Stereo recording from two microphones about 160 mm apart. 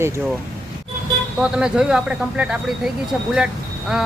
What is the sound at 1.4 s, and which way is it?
Speech, 5° right (ahead or behind).